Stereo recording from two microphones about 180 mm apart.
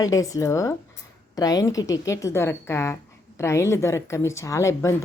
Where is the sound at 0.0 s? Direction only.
20° left (ahead or behind).